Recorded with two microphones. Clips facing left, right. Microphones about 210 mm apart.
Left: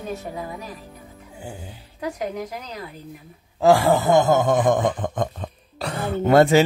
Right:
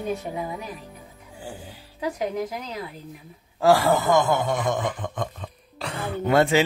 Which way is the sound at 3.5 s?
20° left (ahead or behind).